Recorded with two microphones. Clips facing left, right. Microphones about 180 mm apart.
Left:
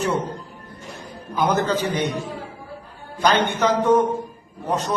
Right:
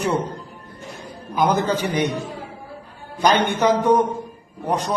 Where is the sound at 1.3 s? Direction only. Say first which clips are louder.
Right 1 dB; 10° right (ahead or behind).